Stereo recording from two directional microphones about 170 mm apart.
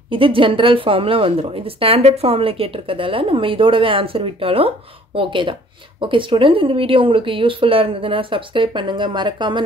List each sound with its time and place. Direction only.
0.1 s speech: 30° right (ahead or behind)